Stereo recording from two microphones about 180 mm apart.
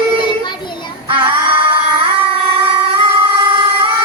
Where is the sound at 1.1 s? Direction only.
30° right (ahead or behind).